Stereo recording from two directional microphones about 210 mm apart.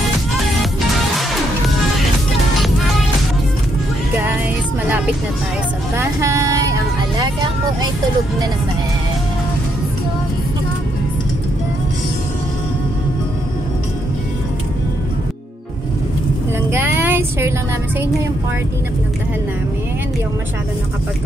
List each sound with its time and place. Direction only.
2.6 s music: centre (ahead or behind)
5.9 s vehicle: 15° right (ahead or behind)
16.7 s vehicle: 10° right (ahead or behind)